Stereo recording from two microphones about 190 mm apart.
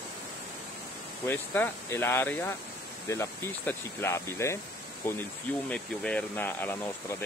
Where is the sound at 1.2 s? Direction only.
10° left (ahead or behind).